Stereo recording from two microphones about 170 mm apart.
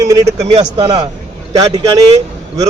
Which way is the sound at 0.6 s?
25° right (ahead or behind).